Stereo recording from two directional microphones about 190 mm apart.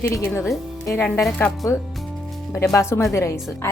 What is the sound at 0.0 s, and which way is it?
Speech, 10° left (ahead or behind).